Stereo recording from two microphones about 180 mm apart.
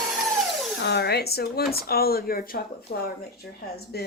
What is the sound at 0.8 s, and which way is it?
Speech, 70° left (ahead or behind).